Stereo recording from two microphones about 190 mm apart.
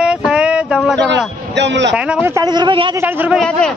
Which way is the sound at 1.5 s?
65° right (ahead or behind).